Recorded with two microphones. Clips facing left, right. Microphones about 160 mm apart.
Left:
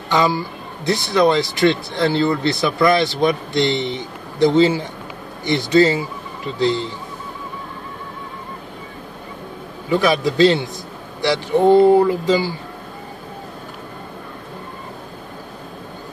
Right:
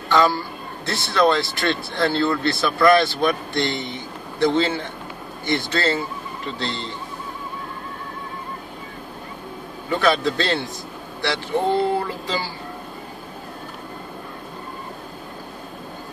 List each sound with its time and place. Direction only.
0.1 s a man's voice: 15° left (ahead or behind)
4.6 s a man's voice: 10° left (ahead or behind)
9.8 s a man's voice: 10° left (ahead or behind)